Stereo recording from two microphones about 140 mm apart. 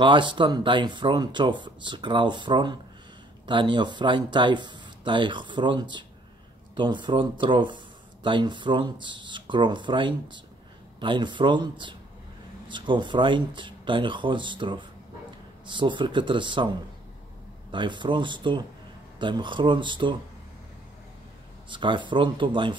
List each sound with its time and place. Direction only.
0.0 s speech: 35° right (ahead or behind)
17.6 s speech: 35° right (ahead or behind)
21.6 s speech: 35° right (ahead or behind)